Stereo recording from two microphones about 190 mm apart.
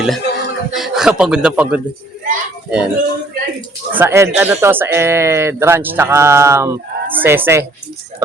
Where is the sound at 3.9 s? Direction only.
10° right (ahead or behind).